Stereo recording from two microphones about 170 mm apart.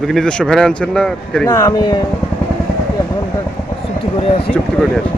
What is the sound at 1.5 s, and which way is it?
Speech, 20° left (ahead or behind).